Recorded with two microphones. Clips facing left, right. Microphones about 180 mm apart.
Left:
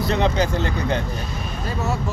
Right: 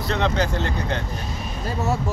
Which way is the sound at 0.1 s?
10° left (ahead or behind).